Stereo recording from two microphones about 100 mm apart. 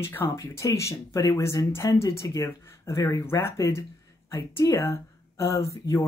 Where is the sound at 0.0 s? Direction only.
25° left (ahead or behind).